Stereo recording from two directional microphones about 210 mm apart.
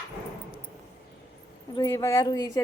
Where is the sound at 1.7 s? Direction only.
20° left (ahead or behind).